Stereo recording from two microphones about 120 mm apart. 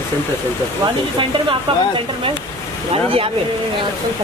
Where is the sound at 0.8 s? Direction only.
45° right (ahead or behind).